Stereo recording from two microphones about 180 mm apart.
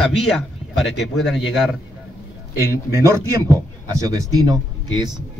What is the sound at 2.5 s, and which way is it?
Speech, 15° right (ahead or behind).